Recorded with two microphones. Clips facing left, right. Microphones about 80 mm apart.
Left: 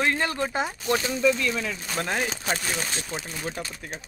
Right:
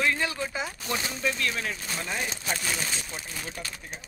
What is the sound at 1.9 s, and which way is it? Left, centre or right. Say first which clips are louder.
Speech: left 7 dB; left.